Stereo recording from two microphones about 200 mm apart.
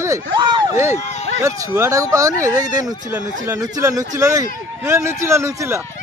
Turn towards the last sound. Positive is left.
turn(degrees=-15)  # may be behind; listen again after turning